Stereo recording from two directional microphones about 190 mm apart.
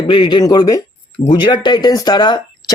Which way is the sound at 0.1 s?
25° left (ahead or behind).